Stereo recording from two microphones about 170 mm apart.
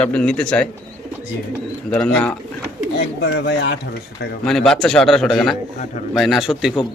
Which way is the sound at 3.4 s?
90° left.